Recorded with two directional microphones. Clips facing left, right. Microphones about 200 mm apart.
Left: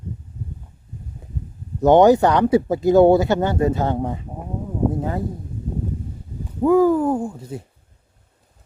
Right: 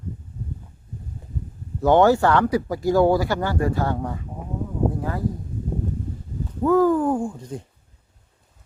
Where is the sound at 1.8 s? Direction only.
20° left (ahead or behind).